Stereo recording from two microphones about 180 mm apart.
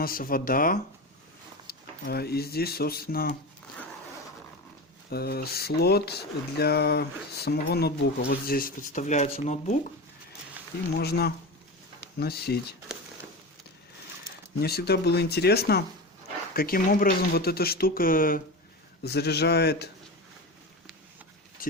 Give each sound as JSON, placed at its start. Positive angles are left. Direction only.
{"t": 0.0, "sound": "speech", "side_deg": 50}
{"t": 5.1, "sound": "speech", "side_deg": 60}
{"t": 10.9, "sound": "speech", "side_deg": 60}
{"t": 14.6, "sound": "speech", "side_deg": 60}
{"t": 19.0, "sound": "speech", "side_deg": 65}
{"t": 21.6, "sound": "a sound", "side_deg": 50}